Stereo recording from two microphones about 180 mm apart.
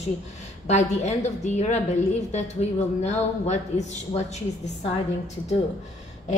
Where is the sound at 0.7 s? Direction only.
40° left (ahead or behind).